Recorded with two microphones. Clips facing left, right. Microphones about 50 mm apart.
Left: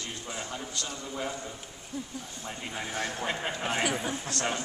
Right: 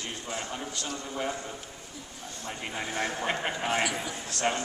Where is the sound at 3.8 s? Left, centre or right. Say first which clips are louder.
Left 1 dB; left.